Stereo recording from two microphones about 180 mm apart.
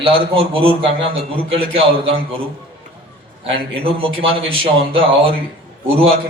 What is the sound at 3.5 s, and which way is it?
A man's voice, 30° right (ahead or behind).